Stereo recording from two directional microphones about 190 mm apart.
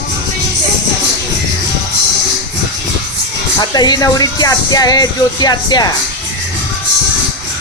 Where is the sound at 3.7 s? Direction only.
20° left (ahead or behind).